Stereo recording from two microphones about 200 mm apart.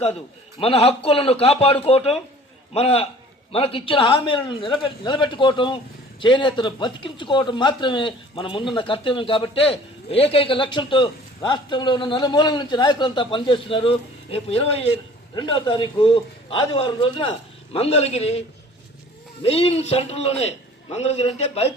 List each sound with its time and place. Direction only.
0.6 s a man's voice: 30° left (ahead or behind)